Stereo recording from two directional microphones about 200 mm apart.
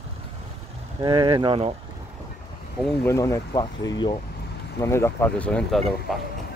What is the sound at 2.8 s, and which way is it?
Speech, 10° left (ahead or behind).